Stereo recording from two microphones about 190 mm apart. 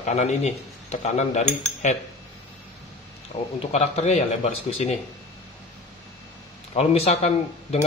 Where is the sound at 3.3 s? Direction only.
35° left (ahead or behind).